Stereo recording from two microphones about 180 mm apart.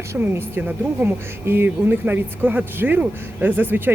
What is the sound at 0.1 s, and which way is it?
Speech, 15° right (ahead or behind).